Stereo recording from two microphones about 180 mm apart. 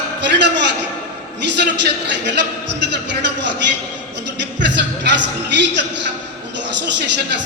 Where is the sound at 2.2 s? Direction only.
75° right (ahead or behind).